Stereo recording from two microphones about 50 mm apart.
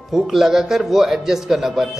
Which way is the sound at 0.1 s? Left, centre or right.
Centre.